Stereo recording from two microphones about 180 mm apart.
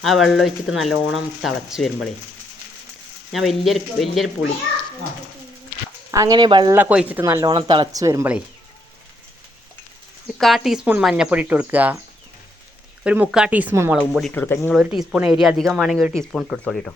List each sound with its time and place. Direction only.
0.0 s speech: centre (ahead or behind)
3.3 s speech: centre (ahead or behind)
6.1 s speech: 20° right (ahead or behind)
6.7 s speech: 10° right (ahead or behind)
10.3 s speech: centre (ahead or behind)
13.1 s speech: 5° right (ahead or behind)
14.1 s speech: centre (ahead or behind)
14.3 s speech: 10° left (ahead or behind)
14.7 s speech: 5° right (ahead or behind)